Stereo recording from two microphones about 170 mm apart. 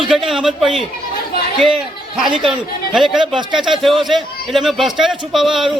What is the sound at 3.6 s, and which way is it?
A man's voice, centre (ahead or behind).